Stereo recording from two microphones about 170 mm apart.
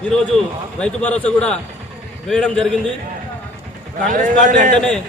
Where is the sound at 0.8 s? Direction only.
5° left (ahead or behind).